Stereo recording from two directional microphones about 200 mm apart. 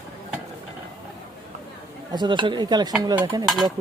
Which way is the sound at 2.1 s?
20° right (ahead or behind).